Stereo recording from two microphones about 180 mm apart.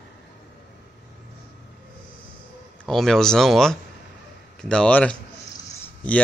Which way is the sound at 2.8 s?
Centre (ahead or behind).